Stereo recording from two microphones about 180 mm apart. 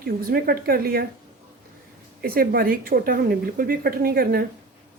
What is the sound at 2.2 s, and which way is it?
A woman's voice, 55° right (ahead or behind).